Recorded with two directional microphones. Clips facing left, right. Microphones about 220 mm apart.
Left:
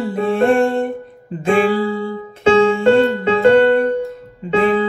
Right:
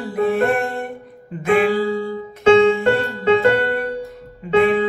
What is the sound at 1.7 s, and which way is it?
Music, 30° right (ahead or behind).